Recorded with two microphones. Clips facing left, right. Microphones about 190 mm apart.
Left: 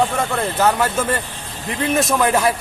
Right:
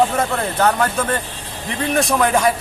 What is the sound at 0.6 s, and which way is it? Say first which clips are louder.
Speech: even; 5° left (ahead or behind).